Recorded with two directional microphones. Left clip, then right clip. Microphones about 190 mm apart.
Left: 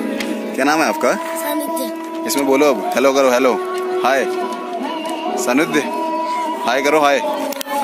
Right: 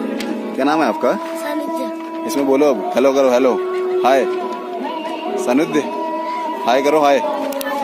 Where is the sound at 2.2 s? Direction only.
5° right (ahead or behind).